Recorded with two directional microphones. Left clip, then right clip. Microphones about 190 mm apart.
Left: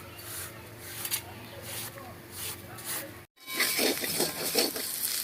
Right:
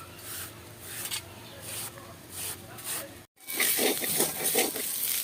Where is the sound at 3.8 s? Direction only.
10° right (ahead or behind).